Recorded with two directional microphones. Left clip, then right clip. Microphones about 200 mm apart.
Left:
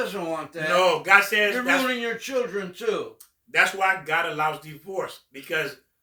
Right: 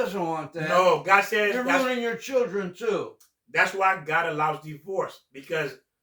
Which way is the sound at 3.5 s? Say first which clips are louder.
Left 1 dB; 15° left (ahead or behind).